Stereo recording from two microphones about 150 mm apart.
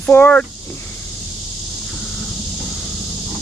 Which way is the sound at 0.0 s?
10° left (ahead or behind).